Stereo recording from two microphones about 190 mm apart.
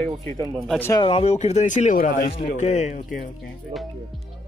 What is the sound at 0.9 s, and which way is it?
Speech, 25° left (ahead or behind).